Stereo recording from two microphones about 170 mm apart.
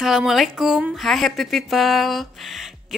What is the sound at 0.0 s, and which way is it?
Speech, centre (ahead or behind).